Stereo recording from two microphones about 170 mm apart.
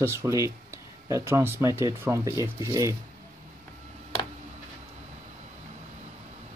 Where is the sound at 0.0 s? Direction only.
15° right (ahead or behind).